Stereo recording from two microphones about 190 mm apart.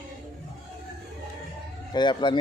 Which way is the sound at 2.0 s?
25° left (ahead or behind).